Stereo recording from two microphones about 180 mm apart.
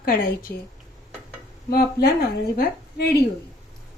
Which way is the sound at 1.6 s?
60° left (ahead or behind).